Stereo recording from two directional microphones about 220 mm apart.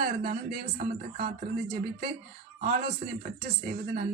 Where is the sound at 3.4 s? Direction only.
40° right (ahead or behind).